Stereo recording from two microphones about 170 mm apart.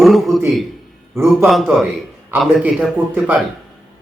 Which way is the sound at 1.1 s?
15° right (ahead or behind).